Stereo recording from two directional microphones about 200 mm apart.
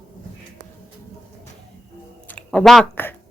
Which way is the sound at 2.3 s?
5° left (ahead or behind).